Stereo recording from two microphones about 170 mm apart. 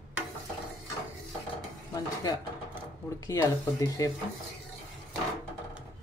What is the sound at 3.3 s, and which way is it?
Speech, 20° left (ahead or behind).